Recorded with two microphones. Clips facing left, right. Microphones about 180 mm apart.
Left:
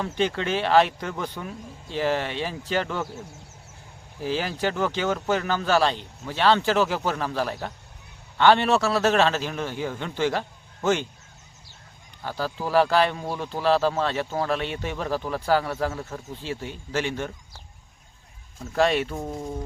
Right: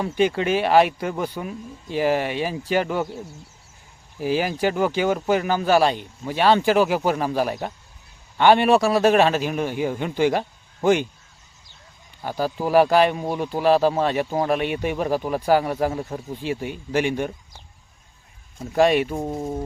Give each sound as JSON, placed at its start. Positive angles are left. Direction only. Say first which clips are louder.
{"t": 0.0, "sound": "speech", "louder": "right 5 dB", "side_deg": -10}
{"t": 12.2, "sound": "speech", "louder": "right 5 dB", "side_deg": -15}
{"t": 18.6, "sound": "speech", "louder": "right 4 dB", "side_deg": -15}